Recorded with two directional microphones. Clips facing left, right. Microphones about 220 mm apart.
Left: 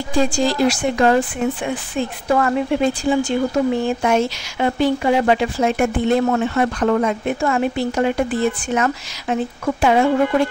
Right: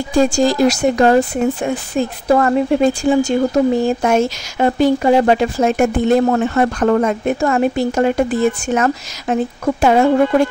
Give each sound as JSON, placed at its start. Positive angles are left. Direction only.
{"t": 0.1, "sound": "speech", "side_deg": -45}